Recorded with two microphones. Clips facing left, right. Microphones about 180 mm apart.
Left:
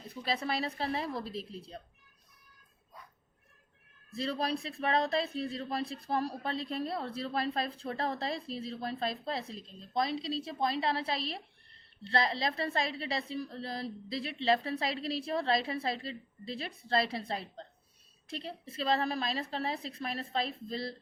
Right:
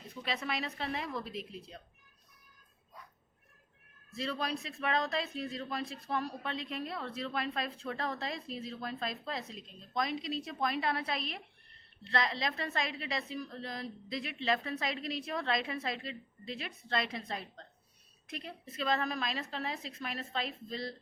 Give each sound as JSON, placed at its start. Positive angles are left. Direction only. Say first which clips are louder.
{"t": 0.1, "sound": "speech", "louder": "left 3 dB", "side_deg": 35}
{"t": 4.1, "sound": "speech", "louder": "left 3 dB", "side_deg": 35}